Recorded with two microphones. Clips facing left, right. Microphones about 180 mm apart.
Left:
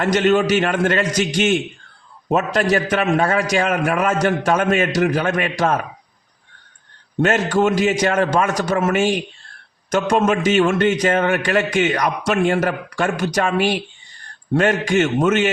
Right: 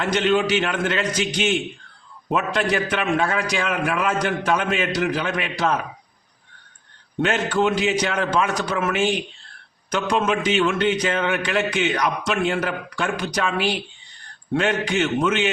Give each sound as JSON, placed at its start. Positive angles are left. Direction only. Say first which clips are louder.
{"t": 0.0, "sound": "a man's voice", "louder": "left 4 dB", "side_deg": 45}
{"t": 7.2, "sound": "a man's voice", "louder": "left 4 dB", "side_deg": 45}